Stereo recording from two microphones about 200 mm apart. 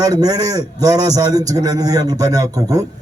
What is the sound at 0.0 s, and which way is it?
A man's voice, 20° right (ahead or behind).